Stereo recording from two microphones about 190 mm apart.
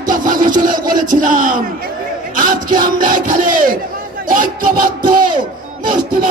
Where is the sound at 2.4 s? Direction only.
50° right (ahead or behind).